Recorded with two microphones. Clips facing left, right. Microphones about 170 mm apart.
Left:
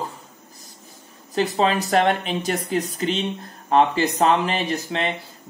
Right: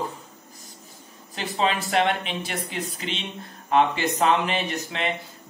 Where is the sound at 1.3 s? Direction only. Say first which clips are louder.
Left 5 dB; 40° left (ahead or behind).